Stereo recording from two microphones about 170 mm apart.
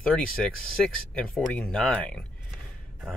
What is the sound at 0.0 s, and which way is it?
Speech, 5° left (ahead or behind).